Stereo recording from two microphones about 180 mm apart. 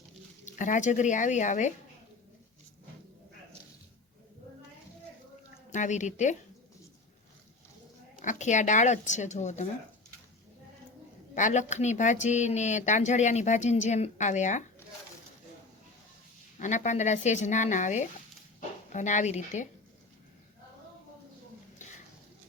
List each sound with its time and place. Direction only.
0.4 s speech: 45° left (ahead or behind)
5.7 s speech: 45° left (ahead or behind)
8.2 s speech: 40° left (ahead or behind)
11.3 s speech: 45° left (ahead or behind)
16.6 s speech: 40° left (ahead or behind)